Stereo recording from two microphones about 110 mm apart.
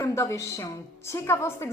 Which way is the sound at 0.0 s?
25° left (ahead or behind).